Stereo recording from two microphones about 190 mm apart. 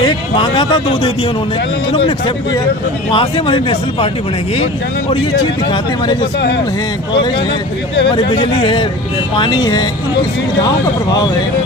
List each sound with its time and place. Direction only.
0.0 s a man's voice: 25° left (ahead or behind)
8.1 s a man's voice: 25° left (ahead or behind)